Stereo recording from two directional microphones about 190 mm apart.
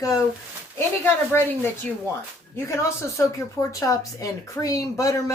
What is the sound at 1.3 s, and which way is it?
Speech, 10° left (ahead or behind).